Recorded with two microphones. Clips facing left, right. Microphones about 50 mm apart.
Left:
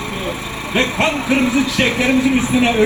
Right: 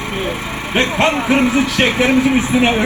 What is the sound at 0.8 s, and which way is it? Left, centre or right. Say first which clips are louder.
Speech: right 2 dB; right.